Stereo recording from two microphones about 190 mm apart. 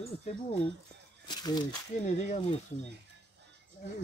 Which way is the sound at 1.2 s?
20° left (ahead or behind).